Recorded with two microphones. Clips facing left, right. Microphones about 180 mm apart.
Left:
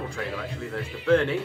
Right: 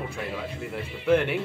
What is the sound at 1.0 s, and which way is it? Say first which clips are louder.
Speech: left 1 dB; 15° right (ahead or behind).